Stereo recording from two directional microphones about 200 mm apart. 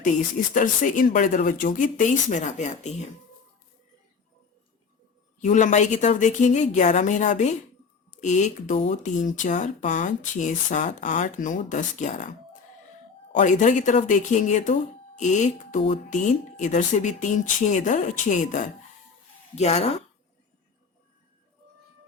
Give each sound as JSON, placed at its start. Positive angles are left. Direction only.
{"t": 0.5, "sound": "speech", "side_deg": 40}
{"t": 5.4, "sound": "speech", "side_deg": 35}
{"t": 13.3, "sound": "speech", "side_deg": 40}